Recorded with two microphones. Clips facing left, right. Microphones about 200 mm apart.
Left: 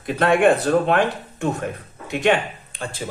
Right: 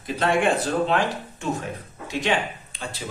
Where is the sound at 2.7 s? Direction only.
55° left (ahead or behind).